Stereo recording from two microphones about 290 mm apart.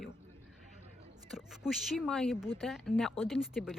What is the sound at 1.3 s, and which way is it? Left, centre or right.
Speech, centre.